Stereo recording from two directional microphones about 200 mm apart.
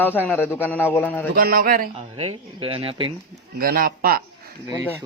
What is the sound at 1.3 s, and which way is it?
Speech, 45° right (ahead or behind).